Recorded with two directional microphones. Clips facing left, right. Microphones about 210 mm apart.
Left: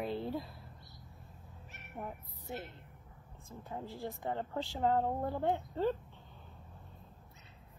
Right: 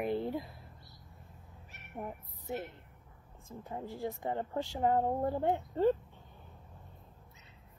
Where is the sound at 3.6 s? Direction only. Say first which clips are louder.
Right 3 dB; 15° right (ahead or behind).